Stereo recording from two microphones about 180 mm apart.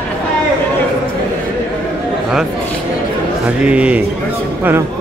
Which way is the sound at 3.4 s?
5° right (ahead or behind).